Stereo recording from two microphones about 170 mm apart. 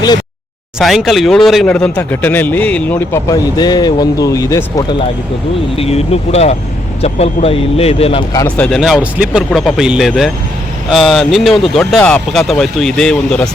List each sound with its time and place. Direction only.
0.8 s a man's voice: centre (ahead or behind); by 4.9 s 20° left (ahead or behind)
5.7 s speech: 35° left (ahead or behind)
8.4 s speech: 10° left (ahead or behind)